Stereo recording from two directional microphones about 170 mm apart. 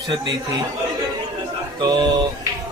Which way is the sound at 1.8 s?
25° right (ahead or behind).